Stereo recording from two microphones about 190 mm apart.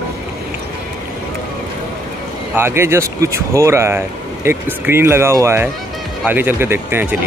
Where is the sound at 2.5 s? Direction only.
15° right (ahead or behind).